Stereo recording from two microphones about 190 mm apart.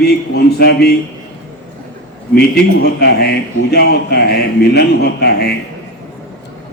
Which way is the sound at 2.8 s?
55° left (ahead or behind).